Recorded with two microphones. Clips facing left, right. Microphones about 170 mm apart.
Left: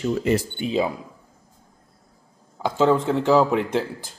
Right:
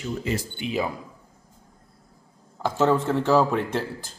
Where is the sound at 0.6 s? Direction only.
25° left (ahead or behind).